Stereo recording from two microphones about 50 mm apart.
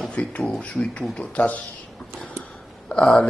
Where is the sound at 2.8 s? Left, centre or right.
Left.